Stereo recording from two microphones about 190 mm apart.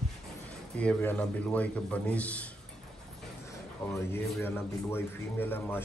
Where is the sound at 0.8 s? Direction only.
10° left (ahead or behind).